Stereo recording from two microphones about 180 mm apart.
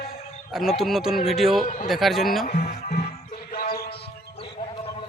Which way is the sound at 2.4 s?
45° left (ahead or behind).